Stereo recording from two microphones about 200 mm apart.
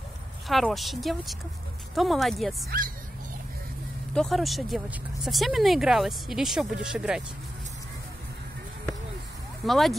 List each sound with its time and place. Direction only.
0.5 s speech: centre (ahead or behind)
2.7 s speech: 45° right (ahead or behind)
4.1 s speech: centre (ahead or behind)
9.7 s speech: centre (ahead or behind)